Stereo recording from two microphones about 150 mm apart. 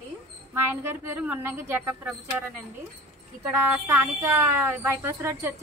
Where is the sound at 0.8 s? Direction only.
15° right (ahead or behind).